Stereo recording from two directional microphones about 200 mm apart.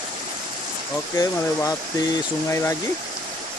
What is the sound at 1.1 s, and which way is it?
Speech, 15° left (ahead or behind).